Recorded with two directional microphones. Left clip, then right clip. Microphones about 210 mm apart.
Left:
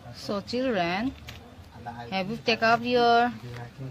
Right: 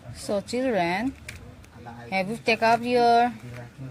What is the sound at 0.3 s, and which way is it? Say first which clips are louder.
Speech: right 3 dB; 10° right (ahead or behind).